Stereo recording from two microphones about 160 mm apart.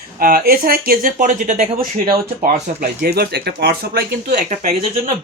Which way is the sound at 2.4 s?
70° right (ahead or behind).